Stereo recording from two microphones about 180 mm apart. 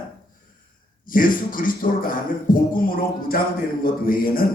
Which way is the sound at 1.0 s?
50° left (ahead or behind).